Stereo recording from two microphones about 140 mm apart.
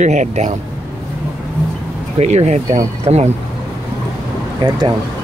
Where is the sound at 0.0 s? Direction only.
60° right (ahead or behind).